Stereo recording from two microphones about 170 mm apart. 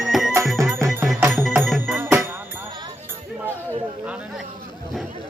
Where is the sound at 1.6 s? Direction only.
Centre (ahead or behind).